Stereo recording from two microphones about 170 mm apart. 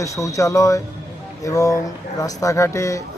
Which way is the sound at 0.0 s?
20° left (ahead or behind).